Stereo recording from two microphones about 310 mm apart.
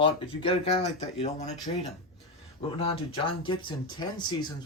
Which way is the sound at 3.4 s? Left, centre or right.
Centre.